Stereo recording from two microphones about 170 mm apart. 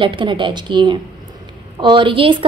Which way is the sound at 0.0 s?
30° right (ahead or behind).